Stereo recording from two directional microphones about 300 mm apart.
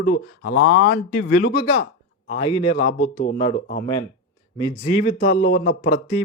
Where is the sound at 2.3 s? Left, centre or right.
Centre.